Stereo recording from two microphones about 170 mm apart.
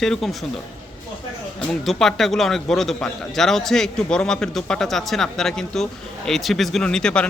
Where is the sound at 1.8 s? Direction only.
Centre (ahead or behind).